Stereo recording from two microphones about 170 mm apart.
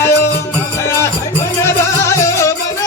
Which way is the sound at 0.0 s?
15° left (ahead or behind).